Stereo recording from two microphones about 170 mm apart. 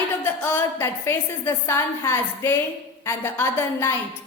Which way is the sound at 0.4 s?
15° left (ahead or behind).